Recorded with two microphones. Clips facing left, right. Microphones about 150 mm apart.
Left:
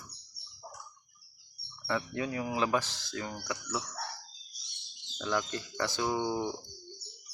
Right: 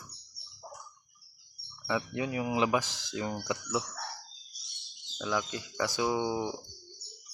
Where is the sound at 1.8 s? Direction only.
10° right (ahead or behind).